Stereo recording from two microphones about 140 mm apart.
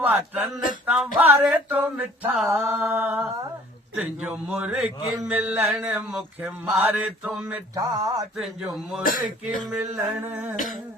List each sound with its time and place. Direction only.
0.0 s mantra: 15° right (ahead or behind)
0.9 s speech: centre (ahead or behind)
1.2 s mantra: 15° right (ahead or behind)
7.8 s a sound: 25° right (ahead or behind)
9.0 s speech: 90° left
9.6 s mantra: 10° right (ahead or behind)